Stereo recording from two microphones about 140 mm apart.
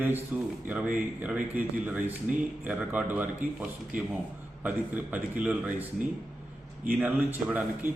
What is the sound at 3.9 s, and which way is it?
Speech, 70° right (ahead or behind).